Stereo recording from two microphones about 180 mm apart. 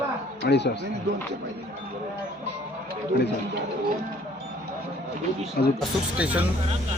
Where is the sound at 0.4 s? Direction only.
70° left (ahead or behind).